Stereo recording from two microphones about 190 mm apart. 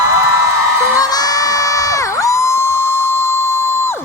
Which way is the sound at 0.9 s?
20° left (ahead or behind).